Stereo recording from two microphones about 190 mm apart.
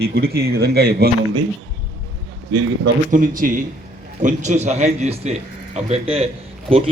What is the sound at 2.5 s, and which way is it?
Speech, 65° right (ahead or behind).